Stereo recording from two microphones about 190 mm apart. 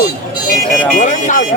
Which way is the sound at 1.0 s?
40° left (ahead or behind).